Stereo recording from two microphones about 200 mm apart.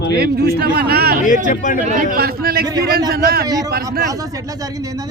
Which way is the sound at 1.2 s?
40° left (ahead or behind).